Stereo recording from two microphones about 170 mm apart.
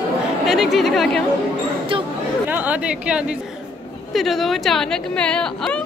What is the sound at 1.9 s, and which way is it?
Chatter, 30° right (ahead or behind).